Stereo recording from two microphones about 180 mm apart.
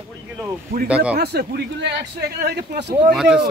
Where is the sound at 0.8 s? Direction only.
5° right (ahead or behind).